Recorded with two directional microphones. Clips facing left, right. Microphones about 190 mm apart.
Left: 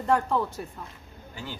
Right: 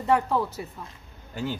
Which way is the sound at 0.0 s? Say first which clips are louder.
Right 1 dB; 5° right (ahead or behind).